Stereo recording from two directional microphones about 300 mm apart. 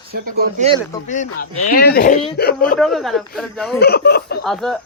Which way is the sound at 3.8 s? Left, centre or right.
Left.